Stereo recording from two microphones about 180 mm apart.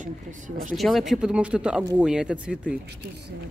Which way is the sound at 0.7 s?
Centre (ahead or behind).